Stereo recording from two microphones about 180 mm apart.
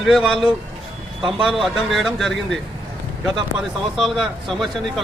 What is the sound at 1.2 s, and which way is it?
Speech, 25° right (ahead or behind).